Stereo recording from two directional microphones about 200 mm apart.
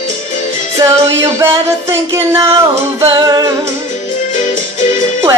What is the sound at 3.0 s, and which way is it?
Speech, 20° right (ahead or behind).